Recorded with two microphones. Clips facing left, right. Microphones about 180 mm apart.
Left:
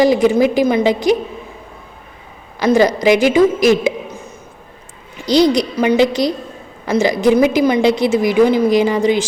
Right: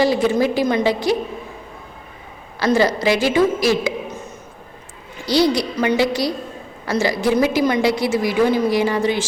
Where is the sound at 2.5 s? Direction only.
15° left (ahead or behind).